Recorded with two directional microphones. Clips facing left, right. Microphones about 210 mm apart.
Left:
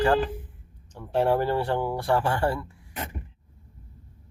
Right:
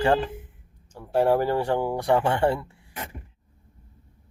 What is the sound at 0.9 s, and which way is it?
Speech, 10° right (ahead or behind).